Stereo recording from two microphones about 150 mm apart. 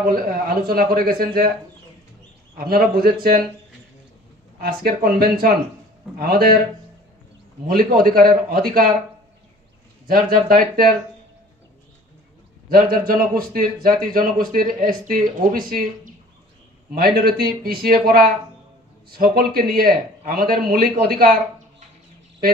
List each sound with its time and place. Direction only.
0.0 s a man's voice: 70° right (ahead or behind)
2.5 s speech: 85° right
4.6 s a man's voice: 75° right (ahead or behind)
7.6 s a man's voice: 70° right (ahead or behind)
10.0 s a man's voice: 70° right (ahead or behind)
12.9 s a man's voice: 75° right (ahead or behind)
16.9 s speech: 80° right